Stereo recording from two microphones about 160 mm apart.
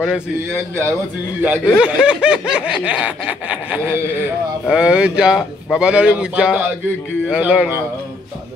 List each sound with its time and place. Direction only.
1.4 s speech: 10° right (ahead or behind)